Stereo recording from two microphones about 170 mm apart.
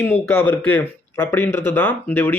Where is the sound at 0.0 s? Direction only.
10° left (ahead or behind).